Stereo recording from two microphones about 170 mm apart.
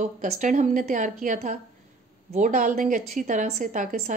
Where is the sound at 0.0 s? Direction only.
45° right (ahead or behind).